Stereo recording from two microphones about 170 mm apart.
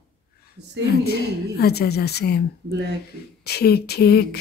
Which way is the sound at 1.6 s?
70° left (ahead or behind).